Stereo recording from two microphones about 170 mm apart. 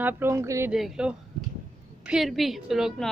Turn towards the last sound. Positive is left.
turn(degrees=0)  # may be behind; listen again after turning